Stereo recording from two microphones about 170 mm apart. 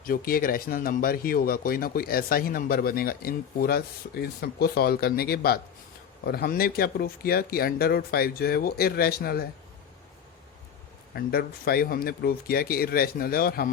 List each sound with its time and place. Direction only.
0.0 s speech: 60° left (ahead or behind)
11.1 s speech: 65° left (ahead or behind)